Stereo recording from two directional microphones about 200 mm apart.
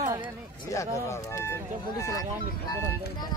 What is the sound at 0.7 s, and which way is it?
Speech, 15° left (ahead or behind).